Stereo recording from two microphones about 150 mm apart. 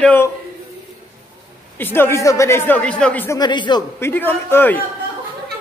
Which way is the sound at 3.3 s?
30° left (ahead or behind).